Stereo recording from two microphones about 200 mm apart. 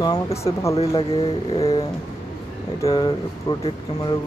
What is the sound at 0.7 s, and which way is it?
Speech, 30° left (ahead or behind).